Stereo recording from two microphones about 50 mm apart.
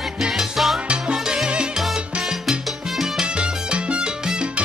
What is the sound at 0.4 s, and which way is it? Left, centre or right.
Salsa music, centre.